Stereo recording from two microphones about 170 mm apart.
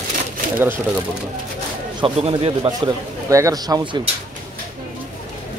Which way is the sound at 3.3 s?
20° right (ahead or behind).